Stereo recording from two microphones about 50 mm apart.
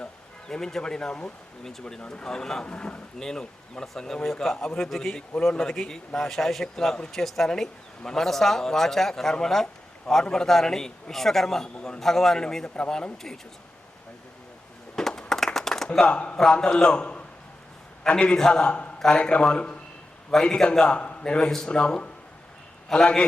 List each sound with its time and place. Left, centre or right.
0.4 s speech: centre
2.6 s a man's voice: left
3.2 s speech: centre
12.7 s a man's voice: left
14.9 s a sound: centre
15.3 s clapping: centre
15.9 s a man's voice: centre